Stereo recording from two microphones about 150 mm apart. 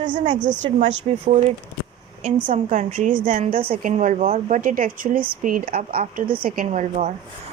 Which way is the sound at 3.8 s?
60° right (ahead or behind).